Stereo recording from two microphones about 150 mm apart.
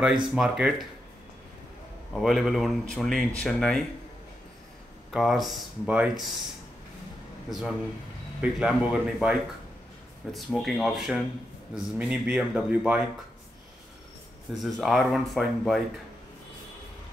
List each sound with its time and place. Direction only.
0.3 s speech: 5° right (ahead or behind)
2.1 s speech: centre (ahead or behind)
5.1 s speech: centre (ahead or behind)
7.4 s speech: centre (ahead or behind)
14.5 s speech: centre (ahead or behind)